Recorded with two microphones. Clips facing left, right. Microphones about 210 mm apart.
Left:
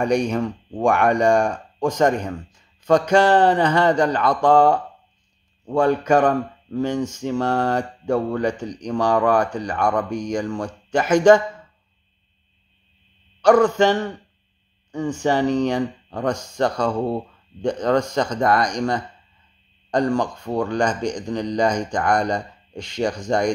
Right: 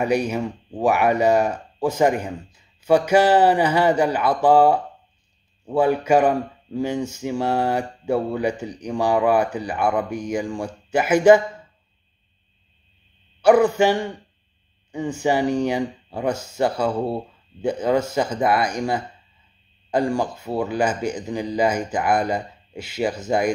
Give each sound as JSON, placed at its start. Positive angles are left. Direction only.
{"t": 0.0, "sound": "speech", "side_deg": -5}
{"t": 13.4, "sound": "speech", "side_deg": -10}